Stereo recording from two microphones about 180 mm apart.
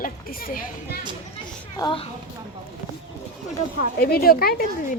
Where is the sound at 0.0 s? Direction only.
50° left (ahead or behind).